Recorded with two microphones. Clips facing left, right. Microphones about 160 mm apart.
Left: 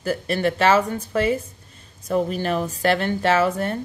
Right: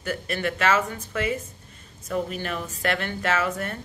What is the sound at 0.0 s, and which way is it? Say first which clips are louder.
A woman's voice: left 6 dB; 35° left (ahead or behind).